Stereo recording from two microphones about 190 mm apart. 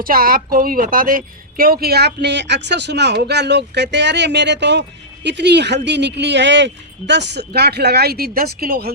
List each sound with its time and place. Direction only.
0.0 s a woman's voice: 50° right (ahead or behind)